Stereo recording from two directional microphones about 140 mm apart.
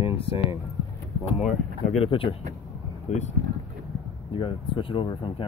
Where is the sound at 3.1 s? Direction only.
55° left (ahead or behind).